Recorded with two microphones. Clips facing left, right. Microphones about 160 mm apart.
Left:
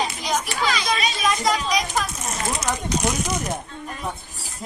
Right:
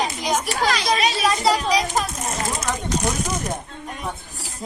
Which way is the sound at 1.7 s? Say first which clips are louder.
Right 3 dB; 30° right (ahead or behind).